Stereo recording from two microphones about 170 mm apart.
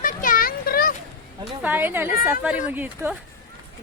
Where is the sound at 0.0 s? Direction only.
55° left (ahead or behind).